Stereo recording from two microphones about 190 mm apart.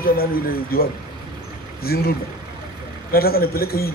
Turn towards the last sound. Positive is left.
turn(degrees=55)  # may be behind; listen again after turning